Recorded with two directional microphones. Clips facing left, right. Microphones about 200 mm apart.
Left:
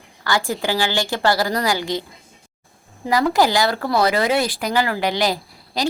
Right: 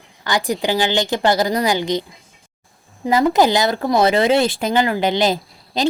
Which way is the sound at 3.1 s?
20° right (ahead or behind).